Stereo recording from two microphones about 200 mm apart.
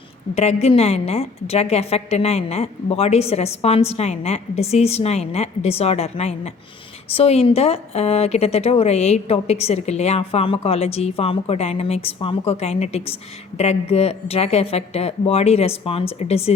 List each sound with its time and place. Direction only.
0.3 s a woman's voice: 30° left (ahead or behind)